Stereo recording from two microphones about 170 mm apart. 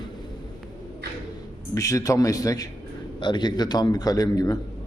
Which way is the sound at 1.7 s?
20° left (ahead or behind).